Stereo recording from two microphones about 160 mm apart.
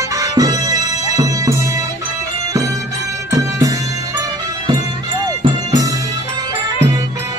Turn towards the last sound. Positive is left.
turn(degrees=-20)  # may be behind; listen again after turning